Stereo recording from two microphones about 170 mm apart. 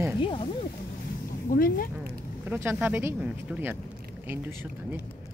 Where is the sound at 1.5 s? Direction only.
55° left (ahead or behind).